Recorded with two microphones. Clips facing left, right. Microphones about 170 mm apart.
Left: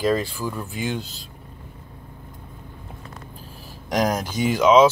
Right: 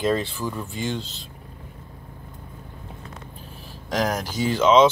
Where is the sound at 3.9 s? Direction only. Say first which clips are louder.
Left 2 dB; 20° left (ahead or behind).